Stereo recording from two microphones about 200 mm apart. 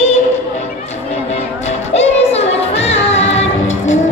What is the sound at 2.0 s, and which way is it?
Music, 30° left (ahead or behind).